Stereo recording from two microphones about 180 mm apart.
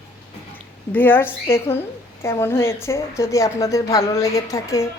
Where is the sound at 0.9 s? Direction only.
10° left (ahead or behind).